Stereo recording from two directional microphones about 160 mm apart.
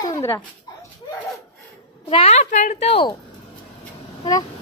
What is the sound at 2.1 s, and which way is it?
A woman's voice, 40° left (ahead or behind).